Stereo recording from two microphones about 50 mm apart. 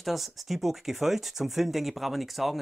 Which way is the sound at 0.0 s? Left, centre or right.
Centre.